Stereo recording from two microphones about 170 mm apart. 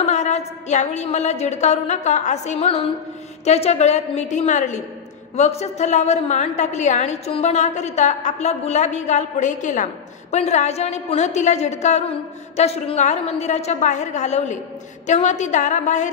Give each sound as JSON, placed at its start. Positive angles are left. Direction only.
{"t": 0.0, "sound": "a woman's voice", "side_deg": 45}